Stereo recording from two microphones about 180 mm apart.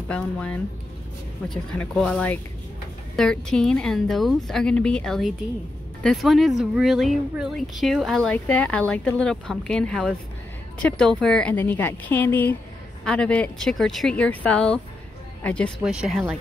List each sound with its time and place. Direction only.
0.1 s a woman's voice: 5° left (ahead or behind)